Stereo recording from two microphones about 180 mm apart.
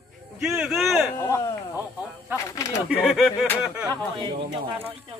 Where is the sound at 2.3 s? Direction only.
15° left (ahead or behind).